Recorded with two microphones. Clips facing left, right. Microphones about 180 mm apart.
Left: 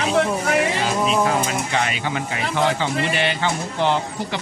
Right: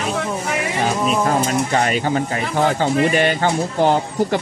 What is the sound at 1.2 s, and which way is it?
Speech, 45° right (ahead or behind).